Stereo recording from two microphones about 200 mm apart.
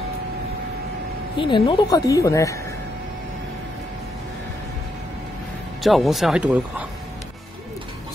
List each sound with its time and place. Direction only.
1.3 s speech: 25° left (ahead or behind)
5.8 s speech: centre (ahead or behind)